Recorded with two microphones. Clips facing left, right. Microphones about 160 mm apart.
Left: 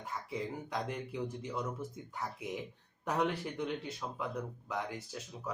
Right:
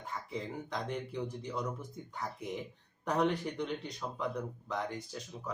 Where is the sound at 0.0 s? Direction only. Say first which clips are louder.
Left 1 dB; 5° left (ahead or behind).